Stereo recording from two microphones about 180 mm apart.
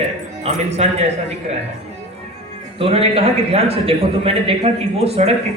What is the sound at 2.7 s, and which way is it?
A man's voice, 30° right (ahead or behind).